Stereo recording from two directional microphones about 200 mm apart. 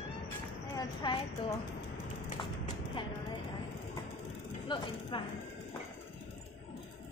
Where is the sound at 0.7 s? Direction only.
25° left (ahead or behind).